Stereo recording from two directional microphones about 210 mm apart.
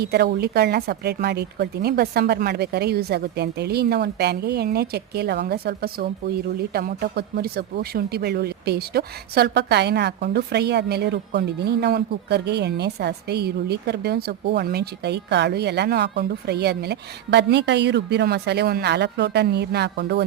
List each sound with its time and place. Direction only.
0.0 s a woman's voice: 50° right (ahead or behind)